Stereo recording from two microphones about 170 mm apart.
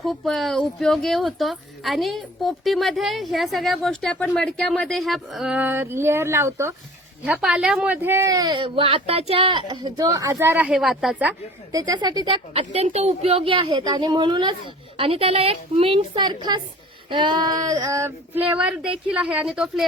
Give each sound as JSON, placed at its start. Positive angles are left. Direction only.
{"t": 0.0, "sound": "speech", "side_deg": 0}
{"t": 7.3, "sound": "female singing", "side_deg": -5}
{"t": 11.7, "sound": "a woman's voice", "side_deg": -25}
{"t": 17.1, "sound": "female singing", "side_deg": -25}